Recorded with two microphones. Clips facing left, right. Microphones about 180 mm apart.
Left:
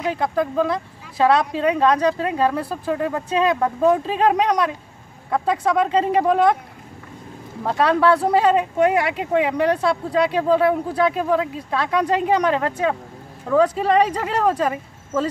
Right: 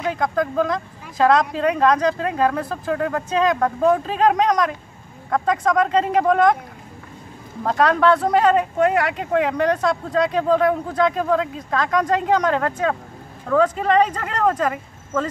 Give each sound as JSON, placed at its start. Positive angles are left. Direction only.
{"t": 0.0, "sound": "speech", "side_deg": 10}
{"t": 7.6, "sound": "speech", "side_deg": 10}